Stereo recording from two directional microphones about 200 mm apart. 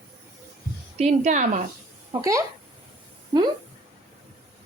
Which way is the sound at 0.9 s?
35° right (ahead or behind).